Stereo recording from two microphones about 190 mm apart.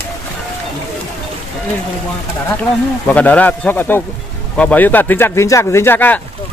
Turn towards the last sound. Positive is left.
turn(degrees=10)  # may be behind; listen again after turning